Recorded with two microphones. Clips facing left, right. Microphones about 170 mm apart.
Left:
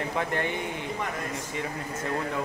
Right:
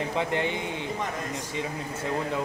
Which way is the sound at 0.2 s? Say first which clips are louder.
Right 2 dB; 20° right (ahead or behind).